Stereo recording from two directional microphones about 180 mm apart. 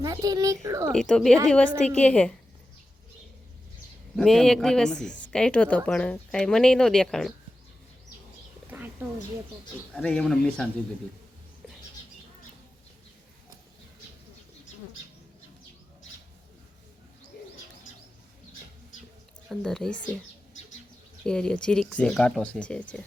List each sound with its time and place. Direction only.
0.0 s a child's voice: 20° right (ahead or behind)
0.9 s a woman's voice: 5° left (ahead or behind)
4.2 s speech: centre (ahead or behind)
8.7 s a sound: 10° right (ahead or behind)
9.9 s speech: 5° left (ahead or behind)
19.5 s speech: 5° left (ahead or behind)
21.2 s speech: 5° left (ahead or behind)